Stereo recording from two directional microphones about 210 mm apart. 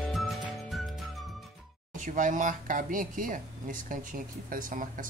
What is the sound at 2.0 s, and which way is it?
Speech, 40° right (ahead or behind).